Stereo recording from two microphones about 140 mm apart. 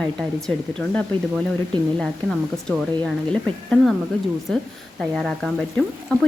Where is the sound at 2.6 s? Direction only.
5° left (ahead or behind).